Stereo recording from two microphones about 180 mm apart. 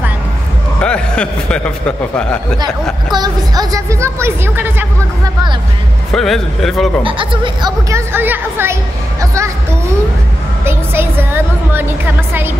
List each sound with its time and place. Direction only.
0.7 s a man's voice: 5° left (ahead or behind)
2.6 s a woman's voice: 25° right (ahead or behind)
6.1 s a man's voice: centre (ahead or behind)
7.0 s speech: 30° right (ahead or behind)
7.9 s a woman's voice: 10° right (ahead or behind)
10.6 s speech: 15° right (ahead or behind)